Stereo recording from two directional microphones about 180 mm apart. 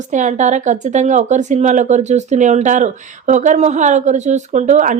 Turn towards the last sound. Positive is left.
turn(degrees=-45)  # may be behind; listen again after turning